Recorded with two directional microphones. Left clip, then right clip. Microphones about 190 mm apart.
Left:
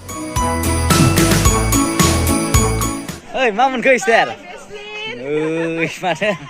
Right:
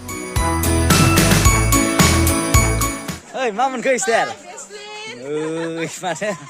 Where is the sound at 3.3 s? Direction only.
15° right (ahead or behind).